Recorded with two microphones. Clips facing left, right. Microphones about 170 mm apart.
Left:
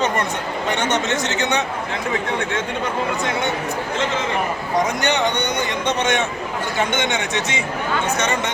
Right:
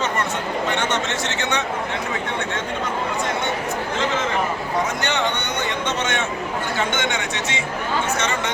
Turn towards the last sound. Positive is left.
turn(degrees=20)  # may be behind; listen again after turning